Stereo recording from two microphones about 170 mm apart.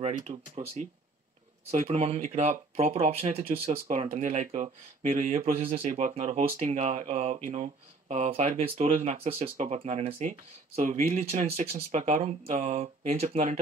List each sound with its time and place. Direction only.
0.0 s speech: 40° right (ahead or behind)